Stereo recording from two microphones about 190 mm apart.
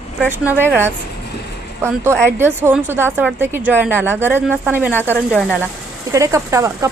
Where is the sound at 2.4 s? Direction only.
10° right (ahead or behind).